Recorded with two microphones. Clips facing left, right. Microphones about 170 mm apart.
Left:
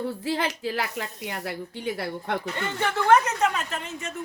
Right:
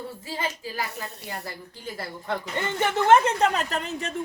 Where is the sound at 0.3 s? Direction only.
75° left (ahead or behind).